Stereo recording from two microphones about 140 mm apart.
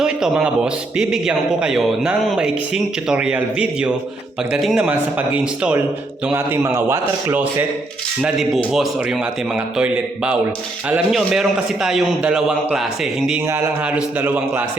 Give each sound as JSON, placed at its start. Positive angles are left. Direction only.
{"t": 0.0, "sound": "a man's voice", "side_deg": -5}
{"t": 8.2, "sound": "a man's voice", "side_deg": 0}
{"t": 13.4, "sound": "speech", "side_deg": -15}